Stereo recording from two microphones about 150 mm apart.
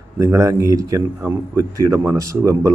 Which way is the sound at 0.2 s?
20° right (ahead or behind).